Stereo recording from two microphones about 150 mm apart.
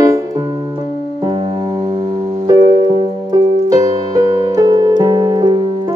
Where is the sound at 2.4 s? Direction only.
25° right (ahead or behind).